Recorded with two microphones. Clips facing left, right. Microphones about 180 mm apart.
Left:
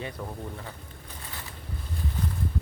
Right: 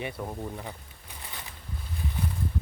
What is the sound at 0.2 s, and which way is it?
Speech, 15° right (ahead or behind).